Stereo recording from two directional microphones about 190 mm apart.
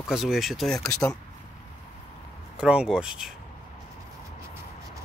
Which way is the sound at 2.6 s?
5° right (ahead or behind).